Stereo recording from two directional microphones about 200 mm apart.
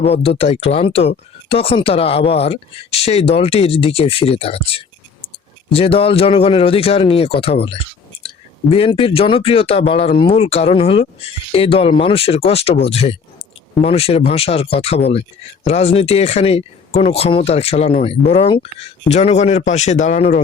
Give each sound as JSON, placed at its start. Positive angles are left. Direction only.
{"t": 0.0, "sound": "speech", "side_deg": 30}